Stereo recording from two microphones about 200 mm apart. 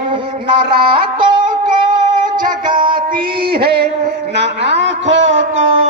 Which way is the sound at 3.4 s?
50° right (ahead or behind).